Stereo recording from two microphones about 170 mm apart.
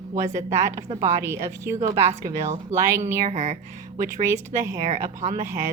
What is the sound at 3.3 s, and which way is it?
Speech, 40° right (ahead or behind).